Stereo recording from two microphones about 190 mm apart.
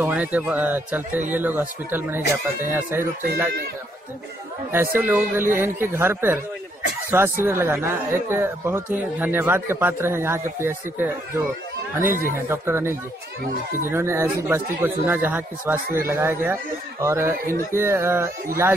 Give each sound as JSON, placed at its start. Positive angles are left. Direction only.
{"t": 0.0, "sound": "speech", "side_deg": -10}
{"t": 4.7, "sound": "speech", "side_deg": -10}
{"t": 12.1, "sound": "speech", "side_deg": -45}
{"t": 12.4, "sound": "speech", "side_deg": -15}